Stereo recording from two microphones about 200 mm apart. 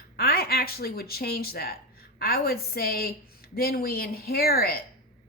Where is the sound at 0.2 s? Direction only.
50° left (ahead or behind).